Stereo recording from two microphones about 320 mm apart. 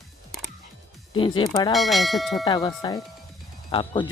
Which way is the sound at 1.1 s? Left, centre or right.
Centre.